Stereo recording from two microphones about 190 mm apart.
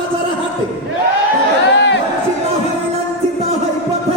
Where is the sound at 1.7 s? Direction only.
70° left (ahead or behind).